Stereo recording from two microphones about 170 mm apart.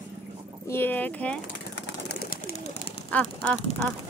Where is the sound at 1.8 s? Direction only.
65° left (ahead or behind).